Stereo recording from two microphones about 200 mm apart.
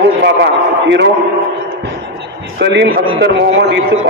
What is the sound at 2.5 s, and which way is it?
A man's voice, 60° right (ahead or behind).